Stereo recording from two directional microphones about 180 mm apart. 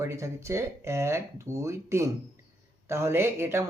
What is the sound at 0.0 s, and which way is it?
Speech, 15° right (ahead or behind).